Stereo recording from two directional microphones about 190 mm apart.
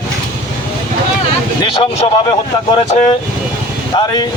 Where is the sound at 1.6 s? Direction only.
30° left (ahead or behind).